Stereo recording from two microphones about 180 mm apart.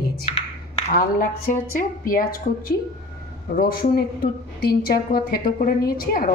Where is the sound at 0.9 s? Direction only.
50° left (ahead or behind).